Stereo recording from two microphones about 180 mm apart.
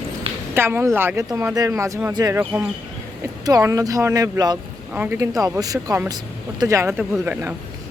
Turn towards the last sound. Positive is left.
turn(degrees=-10)  # may be behind; listen again after turning